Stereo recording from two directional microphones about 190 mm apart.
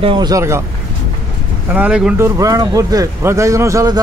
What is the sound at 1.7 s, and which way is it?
A man's voice, 5° right (ahead or behind).